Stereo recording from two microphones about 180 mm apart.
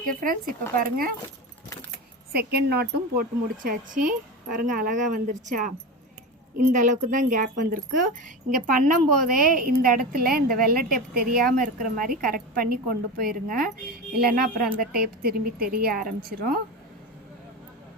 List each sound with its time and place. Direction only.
0.0 s a woman's voice: 50° right (ahead or behind)
2.3 s speech: 60° right (ahead or behind)
3.6 s a woman's voice: 50° right (ahead or behind)